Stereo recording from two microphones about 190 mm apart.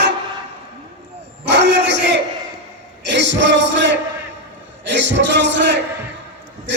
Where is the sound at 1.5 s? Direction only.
65° right (ahead or behind).